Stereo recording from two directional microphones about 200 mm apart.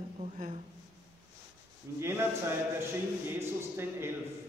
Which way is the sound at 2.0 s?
15° right (ahead or behind).